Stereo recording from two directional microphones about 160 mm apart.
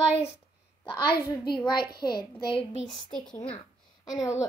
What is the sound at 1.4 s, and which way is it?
A child's voice, 30° left (ahead or behind).